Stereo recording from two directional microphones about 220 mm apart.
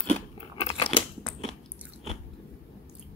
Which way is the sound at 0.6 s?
30° left (ahead or behind).